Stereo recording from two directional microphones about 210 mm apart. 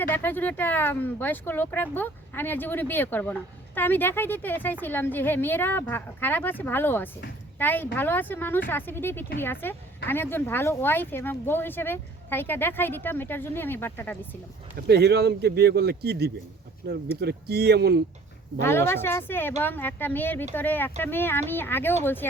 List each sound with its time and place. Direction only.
0.1 s speech: 10° left (ahead or behind)
14.8 s speech: 50° right (ahead or behind)
18.6 s speech: 10° left (ahead or behind)